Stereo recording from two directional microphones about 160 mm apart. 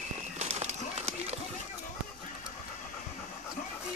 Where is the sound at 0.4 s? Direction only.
45° right (ahead or behind).